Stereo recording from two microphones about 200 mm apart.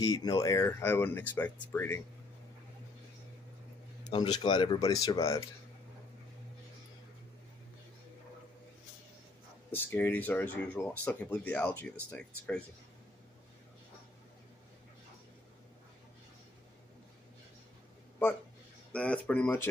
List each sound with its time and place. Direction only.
0.0 s speech: 20° left (ahead or behind)
4.1 s speech: 25° left (ahead or behind)
9.7 s speech: 10° left (ahead or behind)
18.9 s speech: 5° left (ahead or behind)